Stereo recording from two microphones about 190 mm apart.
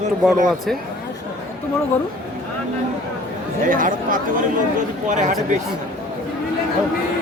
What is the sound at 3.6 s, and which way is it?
Speech, 45° right (ahead or behind).